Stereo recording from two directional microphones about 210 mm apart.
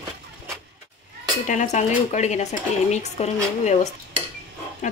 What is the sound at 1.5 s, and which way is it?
Speech, 35° left (ahead or behind).